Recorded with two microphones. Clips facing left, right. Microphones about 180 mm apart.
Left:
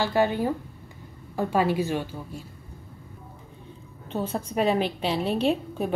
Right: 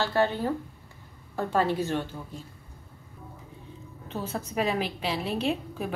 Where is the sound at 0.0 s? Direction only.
15° left (ahead or behind).